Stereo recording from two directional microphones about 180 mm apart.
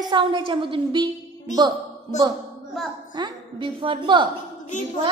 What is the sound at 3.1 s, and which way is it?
A woman's voice, 25° right (ahead or behind).